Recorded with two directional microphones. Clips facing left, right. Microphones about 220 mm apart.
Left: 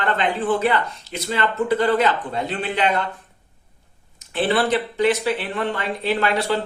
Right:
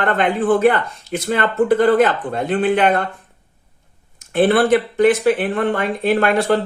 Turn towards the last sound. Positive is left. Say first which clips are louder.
# right 5 dB
turn(degrees=-50)  # may be behind; listen again after turning